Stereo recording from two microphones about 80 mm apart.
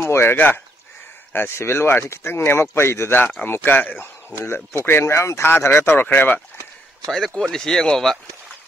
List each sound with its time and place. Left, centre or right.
0.0 s speech: left
7.1 s speech: centre